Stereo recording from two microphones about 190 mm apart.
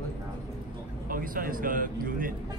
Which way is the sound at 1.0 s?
45° right (ahead or behind).